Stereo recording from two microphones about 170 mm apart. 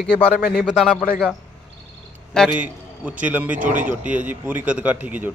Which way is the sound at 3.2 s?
10° right (ahead or behind).